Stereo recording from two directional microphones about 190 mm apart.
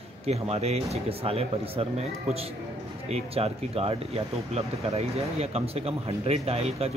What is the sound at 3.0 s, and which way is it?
Speech, 30° right (ahead or behind).